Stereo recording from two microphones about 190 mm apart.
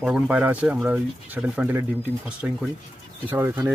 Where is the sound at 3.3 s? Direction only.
10° right (ahead or behind).